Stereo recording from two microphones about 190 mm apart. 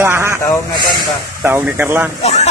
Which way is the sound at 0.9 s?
10° right (ahead or behind).